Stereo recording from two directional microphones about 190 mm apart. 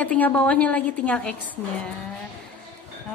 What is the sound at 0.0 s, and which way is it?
Speech, 5° left (ahead or behind).